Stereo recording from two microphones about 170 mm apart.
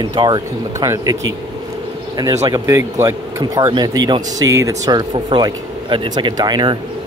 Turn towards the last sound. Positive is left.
turn(degrees=-25)  # may be behind; listen again after turning